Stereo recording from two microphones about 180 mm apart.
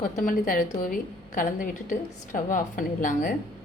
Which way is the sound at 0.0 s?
50° left (ahead or behind).